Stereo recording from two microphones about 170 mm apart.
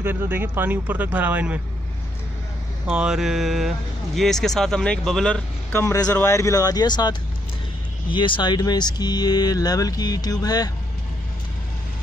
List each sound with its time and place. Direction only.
0.0 s speech: 10° right (ahead or behind)
2.9 s speech: 5° right (ahead or behind)
5.7 s speech: 15° left (ahead or behind)